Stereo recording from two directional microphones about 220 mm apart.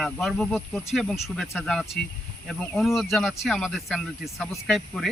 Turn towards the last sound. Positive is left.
turn(degrees=0)  # may be behind; listen again after turning